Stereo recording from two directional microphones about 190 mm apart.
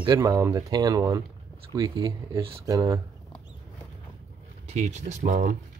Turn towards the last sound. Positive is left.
turn(degrees=-40)  # may be behind; listen again after turning